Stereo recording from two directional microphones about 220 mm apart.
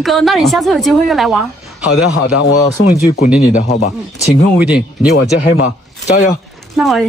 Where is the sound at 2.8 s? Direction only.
60° left (ahead or behind).